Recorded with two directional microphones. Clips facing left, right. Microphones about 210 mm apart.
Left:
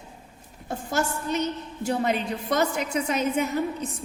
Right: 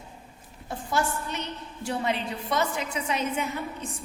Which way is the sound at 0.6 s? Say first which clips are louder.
Left 1 dB; 45° left (ahead or behind).